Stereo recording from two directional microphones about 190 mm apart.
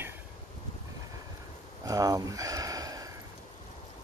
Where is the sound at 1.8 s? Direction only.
20° right (ahead or behind).